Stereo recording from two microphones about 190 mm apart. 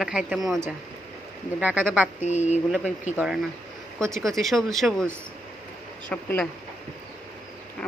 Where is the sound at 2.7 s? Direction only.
5° right (ahead or behind).